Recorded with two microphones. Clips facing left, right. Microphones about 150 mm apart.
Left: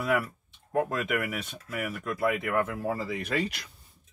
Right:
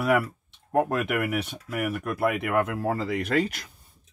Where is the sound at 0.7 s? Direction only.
60° right (ahead or behind).